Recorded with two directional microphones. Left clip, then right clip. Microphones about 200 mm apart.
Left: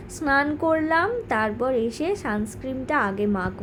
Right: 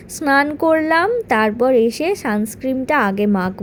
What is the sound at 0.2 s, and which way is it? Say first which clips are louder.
A woman's voice: right 6 dB; 45° right (ahead or behind).